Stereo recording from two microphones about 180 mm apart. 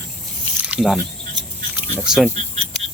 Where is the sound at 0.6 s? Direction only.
5° right (ahead or behind).